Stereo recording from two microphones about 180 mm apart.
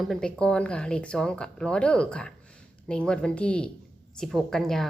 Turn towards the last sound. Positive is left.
turn(degrees=0)  # may be behind; listen again after turning